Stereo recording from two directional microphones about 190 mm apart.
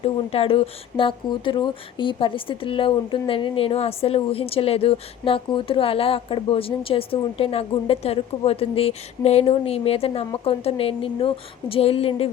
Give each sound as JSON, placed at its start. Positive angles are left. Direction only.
{"t": 0.0, "sound": "speech", "side_deg": 30}